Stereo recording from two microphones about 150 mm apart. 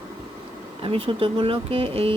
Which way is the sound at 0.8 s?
35° right (ahead or behind).